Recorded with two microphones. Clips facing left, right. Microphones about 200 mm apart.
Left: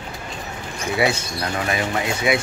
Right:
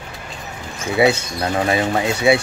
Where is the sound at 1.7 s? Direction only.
30° right (ahead or behind).